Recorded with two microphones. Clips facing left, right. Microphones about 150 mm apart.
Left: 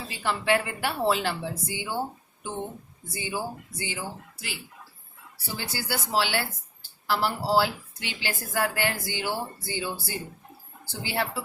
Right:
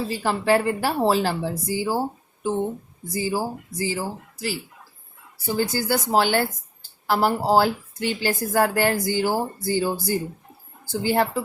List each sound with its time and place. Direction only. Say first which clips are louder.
0.1 s speech: right 4 dB; 40° right (ahead or behind)
3.1 s speech: right 7 dB; 35° right (ahead or behind)
5.5 s a woman's voice: right 10 dB; 45° right (ahead or behind)